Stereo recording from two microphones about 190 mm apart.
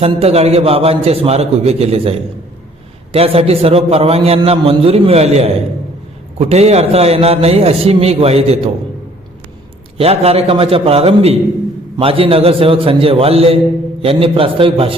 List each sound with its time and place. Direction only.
0.0 s a man's voice: 30° right (ahead or behind)
6.5 s a man's voice: 35° right (ahead or behind)
10.0 s a man's voice: 30° right (ahead or behind)